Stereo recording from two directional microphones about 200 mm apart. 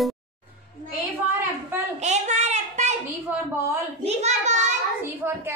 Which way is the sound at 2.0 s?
35° right (ahead or behind).